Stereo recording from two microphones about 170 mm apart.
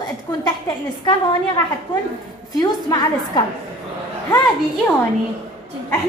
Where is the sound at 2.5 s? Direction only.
25° left (ahead or behind).